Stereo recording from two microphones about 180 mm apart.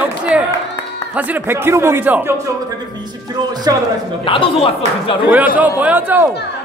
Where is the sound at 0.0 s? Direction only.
5° right (ahead or behind).